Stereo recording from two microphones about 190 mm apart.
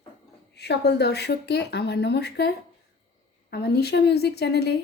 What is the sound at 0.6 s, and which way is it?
A woman's voice, 60° left (ahead or behind).